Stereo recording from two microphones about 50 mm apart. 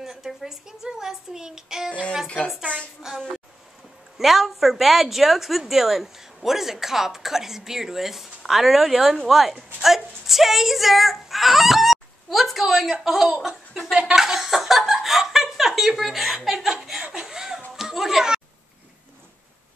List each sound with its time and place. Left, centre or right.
0.0 s a woman's voice: centre
1.9 s speech: left
4.2 s a woman's voice: centre
14.2 s chuckle: centre
16.0 s a woman's voice: centre
17.0 s a sound: centre